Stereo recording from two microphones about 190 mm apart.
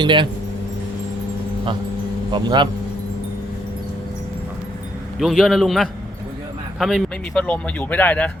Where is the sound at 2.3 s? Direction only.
25° right (ahead or behind).